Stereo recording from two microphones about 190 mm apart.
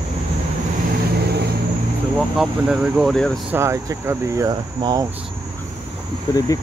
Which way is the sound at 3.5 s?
15° right (ahead or behind).